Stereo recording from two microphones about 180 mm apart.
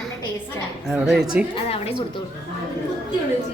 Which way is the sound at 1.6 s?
35° left (ahead or behind).